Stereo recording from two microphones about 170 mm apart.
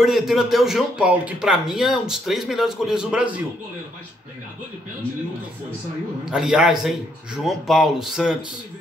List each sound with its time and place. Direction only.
0.0 s speech: centre (ahead or behind)
6.3 s speech: 5° right (ahead or behind)